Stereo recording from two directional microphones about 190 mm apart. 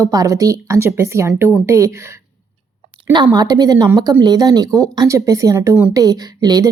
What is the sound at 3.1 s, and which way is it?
A woman's voice, 25° right (ahead or behind).